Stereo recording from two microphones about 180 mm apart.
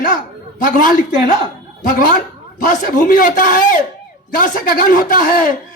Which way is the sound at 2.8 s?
50° left (ahead or behind).